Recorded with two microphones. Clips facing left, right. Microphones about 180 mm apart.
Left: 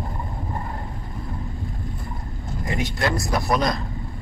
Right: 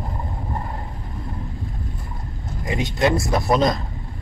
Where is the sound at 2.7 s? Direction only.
20° right (ahead or behind).